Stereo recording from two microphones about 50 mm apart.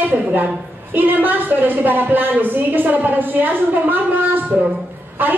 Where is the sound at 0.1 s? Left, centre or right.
Right.